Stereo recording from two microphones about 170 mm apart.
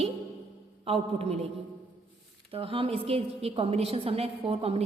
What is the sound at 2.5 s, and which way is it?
A woman's voice, 30° right (ahead or behind).